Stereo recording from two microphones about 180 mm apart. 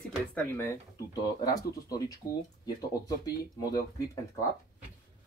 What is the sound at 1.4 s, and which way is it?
Speech, 20° left (ahead or behind).